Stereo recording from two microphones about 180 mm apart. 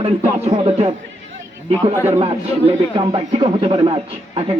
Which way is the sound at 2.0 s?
35° right (ahead or behind).